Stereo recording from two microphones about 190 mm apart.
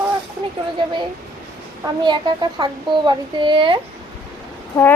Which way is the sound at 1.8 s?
25° right (ahead or behind).